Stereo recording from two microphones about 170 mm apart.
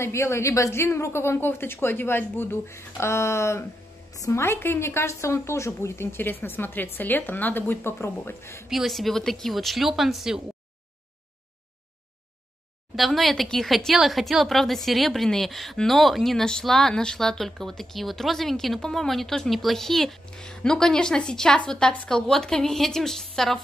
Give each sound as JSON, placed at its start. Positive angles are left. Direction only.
{"t": 0.0, "sound": "speech", "side_deg": 15}
{"t": 8.6, "sound": "speech", "side_deg": 0}
{"t": 12.9, "sound": "speech", "side_deg": 0}